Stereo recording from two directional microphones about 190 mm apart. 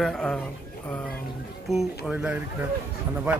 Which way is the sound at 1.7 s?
Centre (ahead or behind).